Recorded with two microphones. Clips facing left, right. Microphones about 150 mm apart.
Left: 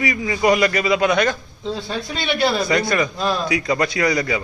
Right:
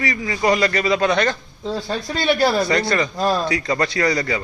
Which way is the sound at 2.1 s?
40° right (ahead or behind).